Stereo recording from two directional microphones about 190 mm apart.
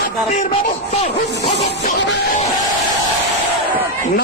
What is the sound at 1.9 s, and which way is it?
Music, 65° left (ahead or behind).